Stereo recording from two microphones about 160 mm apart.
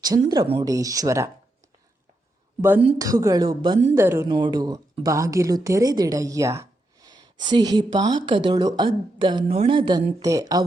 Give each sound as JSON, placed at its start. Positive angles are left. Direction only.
{"t": 0.1, "sound": "speech", "side_deg": -30}
{"t": 0.6, "sound": "a woman's voice", "side_deg": -20}
{"t": 2.6, "sound": "a woman's voice", "side_deg": -10}
{"t": 3.9, "sound": "speech", "side_deg": -15}
{"t": 4.3, "sound": "a woman's voice", "side_deg": -25}